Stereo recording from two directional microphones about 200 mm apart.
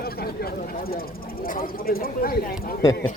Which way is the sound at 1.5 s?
45° left (ahead or behind).